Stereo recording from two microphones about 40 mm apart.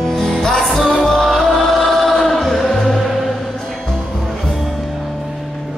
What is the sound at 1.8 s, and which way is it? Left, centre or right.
Choir, centre.